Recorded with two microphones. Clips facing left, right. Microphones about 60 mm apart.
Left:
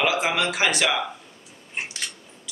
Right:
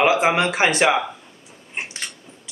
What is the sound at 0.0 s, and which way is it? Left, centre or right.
Speech, right.